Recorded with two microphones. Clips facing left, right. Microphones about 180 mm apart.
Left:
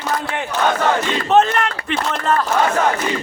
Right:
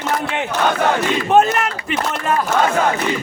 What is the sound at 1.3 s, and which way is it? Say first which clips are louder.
Speech: even; 10° right (ahead or behind).